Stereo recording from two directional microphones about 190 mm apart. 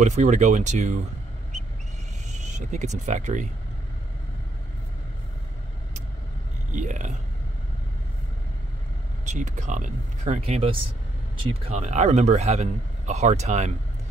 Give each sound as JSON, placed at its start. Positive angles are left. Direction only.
{"t": 0.0, "sound": "speech", "side_deg": -40}
{"t": 2.3, "sound": "speech", "side_deg": -40}
{"t": 6.7, "sound": "speech", "side_deg": -40}
{"t": 9.2, "sound": "speech", "side_deg": -40}